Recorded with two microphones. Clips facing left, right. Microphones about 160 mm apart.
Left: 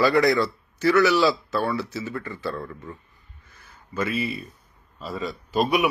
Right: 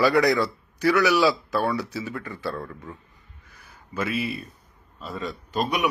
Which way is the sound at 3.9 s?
5° right (ahead or behind).